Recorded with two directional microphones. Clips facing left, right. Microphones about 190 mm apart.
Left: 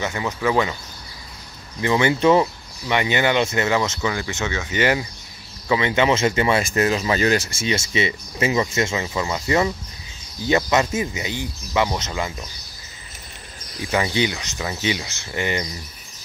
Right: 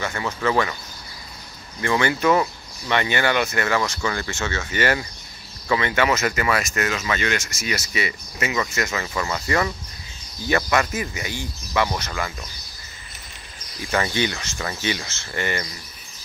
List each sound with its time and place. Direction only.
0.0 s speech: 15° left (ahead or behind)
1.8 s speech: 20° left (ahead or behind)
13.9 s speech: 15° left (ahead or behind)